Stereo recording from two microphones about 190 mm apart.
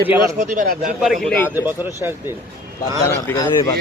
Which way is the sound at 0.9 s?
Centre (ahead or behind).